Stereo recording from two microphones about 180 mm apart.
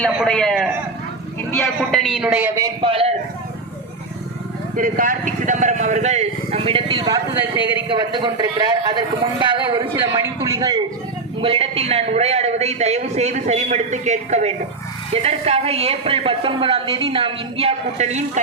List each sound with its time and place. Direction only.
0.2 s a man's voice: 5° left (ahead or behind)
1.9 s a woman's voice: 5° left (ahead or behind)
2.8 s a man's voice: 30° right (ahead or behind)
4.8 s a man's voice: 50° right (ahead or behind); by 10.1 s 25° right (ahead or behind)
10.2 s a man's voice: 15° right (ahead or behind); by 18.3 s 40° right (ahead or behind)